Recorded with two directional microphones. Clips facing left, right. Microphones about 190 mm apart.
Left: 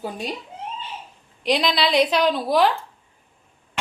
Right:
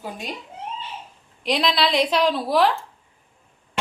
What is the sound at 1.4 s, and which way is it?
A woman's voice, centre (ahead or behind).